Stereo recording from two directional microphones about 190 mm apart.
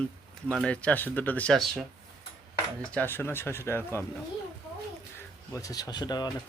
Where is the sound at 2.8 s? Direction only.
5° left (ahead or behind).